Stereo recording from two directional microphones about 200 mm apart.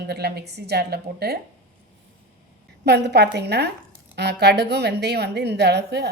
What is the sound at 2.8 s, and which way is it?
A woman's voice, 55° right (ahead or behind).